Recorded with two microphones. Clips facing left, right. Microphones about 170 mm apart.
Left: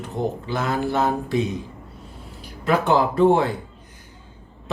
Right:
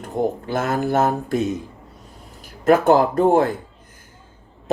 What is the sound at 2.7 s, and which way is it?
Speech, 45° right (ahead or behind).